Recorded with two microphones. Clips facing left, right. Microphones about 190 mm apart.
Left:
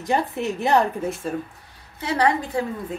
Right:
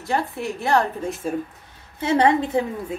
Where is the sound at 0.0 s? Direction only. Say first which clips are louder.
Left 2 dB; 20° left (ahead or behind).